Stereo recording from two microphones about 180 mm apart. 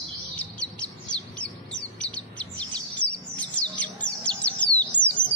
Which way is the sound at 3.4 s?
5° left (ahead or behind).